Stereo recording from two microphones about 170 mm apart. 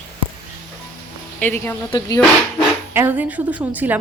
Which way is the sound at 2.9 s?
10° right (ahead or behind).